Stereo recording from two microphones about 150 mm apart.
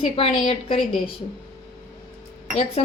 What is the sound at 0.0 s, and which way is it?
A woman's voice, 40° left (ahead or behind).